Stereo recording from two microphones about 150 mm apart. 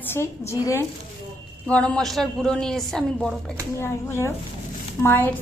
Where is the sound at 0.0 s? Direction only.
15° left (ahead or behind).